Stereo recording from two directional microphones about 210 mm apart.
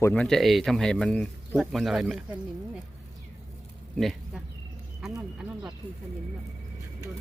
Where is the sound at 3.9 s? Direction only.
Centre (ahead or behind).